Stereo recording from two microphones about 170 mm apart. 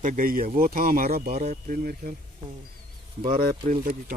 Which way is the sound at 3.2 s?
55° right (ahead or behind).